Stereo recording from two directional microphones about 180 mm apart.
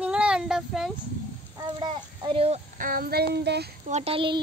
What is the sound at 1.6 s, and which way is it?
Speech, 25° right (ahead or behind).